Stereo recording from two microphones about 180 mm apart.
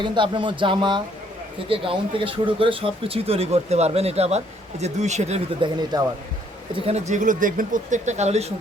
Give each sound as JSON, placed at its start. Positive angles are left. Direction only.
{"t": 0.0, "sound": "speech", "side_deg": -25}
{"t": 5.6, "sound": "speech", "side_deg": -20}
{"t": 6.7, "sound": "speech", "side_deg": -35}